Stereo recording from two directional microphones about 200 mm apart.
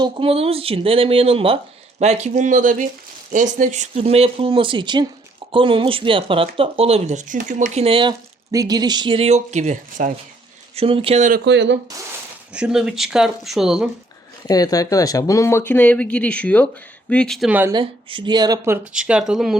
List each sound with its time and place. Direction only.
0.0 s speech: 25° right (ahead or behind); by 11.8 s 65° right (ahead or behind)
12.5 s speech: 5° right (ahead or behind)
14.4 s speech: 15° left (ahead or behind); by 17.7 s 10° right (ahead or behind)
17.7 s speech: 25° right (ahead or behind); by 19.5 s centre (ahead or behind)